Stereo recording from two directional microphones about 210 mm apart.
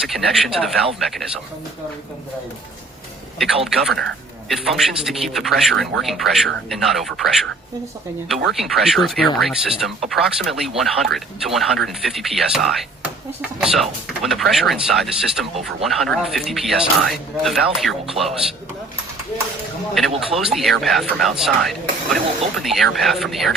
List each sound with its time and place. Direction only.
0.0 s speech: centre (ahead or behind)
3.3 s speech: centre (ahead or behind)
8.5 s speech: centre (ahead or behind)
18.2 s a man's voice: 30° right (ahead or behind)
19.9 s speech: centre (ahead or behind)